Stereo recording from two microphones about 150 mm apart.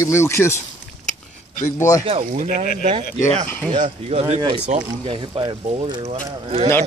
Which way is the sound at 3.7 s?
40° right (ahead or behind).